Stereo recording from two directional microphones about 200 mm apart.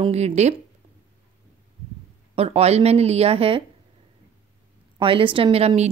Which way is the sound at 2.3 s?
30° right (ahead or behind).